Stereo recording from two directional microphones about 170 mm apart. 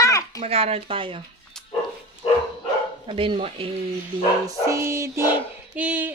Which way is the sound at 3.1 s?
30° right (ahead or behind).